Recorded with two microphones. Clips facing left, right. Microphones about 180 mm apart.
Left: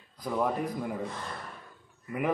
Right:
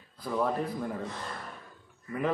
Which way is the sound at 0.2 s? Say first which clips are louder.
Even; 15° left (ahead or behind).